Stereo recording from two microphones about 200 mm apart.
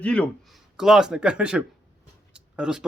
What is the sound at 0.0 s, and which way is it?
Speech, 5° left (ahead or behind).